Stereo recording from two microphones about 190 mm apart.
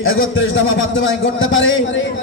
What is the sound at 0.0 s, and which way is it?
A man's voice, 90° left.